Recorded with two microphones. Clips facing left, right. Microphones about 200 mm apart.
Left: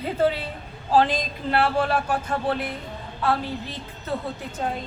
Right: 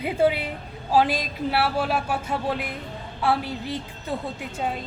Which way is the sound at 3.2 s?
10° right (ahead or behind).